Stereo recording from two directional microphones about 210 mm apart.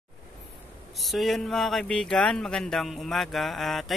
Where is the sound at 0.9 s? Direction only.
Centre (ahead or behind).